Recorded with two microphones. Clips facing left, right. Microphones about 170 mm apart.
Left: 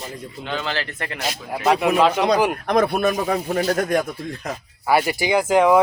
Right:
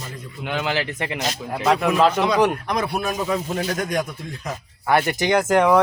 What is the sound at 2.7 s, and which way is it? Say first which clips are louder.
Speech: left 5 dB; 55° left (ahead or behind).